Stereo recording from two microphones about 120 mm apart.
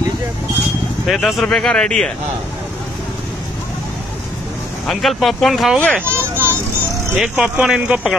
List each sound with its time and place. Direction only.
1.0 s speech: centre (ahead or behind)
4.8 s speech: centre (ahead or behind)
6.0 s children playing: 20° right (ahead or behind)
7.2 s speech: 10° right (ahead or behind)